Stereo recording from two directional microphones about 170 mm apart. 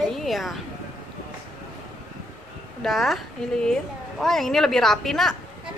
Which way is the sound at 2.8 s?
Centre (ahead or behind).